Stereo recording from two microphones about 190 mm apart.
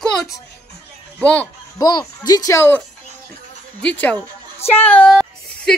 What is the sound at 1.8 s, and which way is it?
Speech, 20° left (ahead or behind).